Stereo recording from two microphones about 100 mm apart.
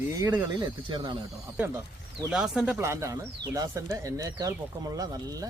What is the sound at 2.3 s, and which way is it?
Speech, 5° right (ahead or behind).